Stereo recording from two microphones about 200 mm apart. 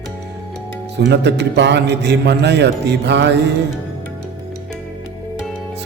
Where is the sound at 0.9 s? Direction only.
60° right (ahead or behind).